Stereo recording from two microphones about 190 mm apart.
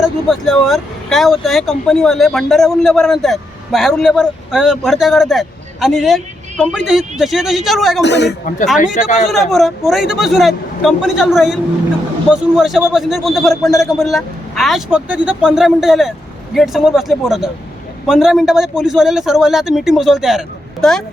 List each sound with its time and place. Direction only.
0.0 s a man's voice: centre (ahead or behind)
8.0 s a man's voice: 65° left (ahead or behind)
9.2 s a man's voice: centre (ahead or behind)